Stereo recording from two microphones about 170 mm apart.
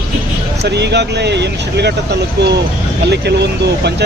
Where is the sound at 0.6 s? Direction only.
80° right.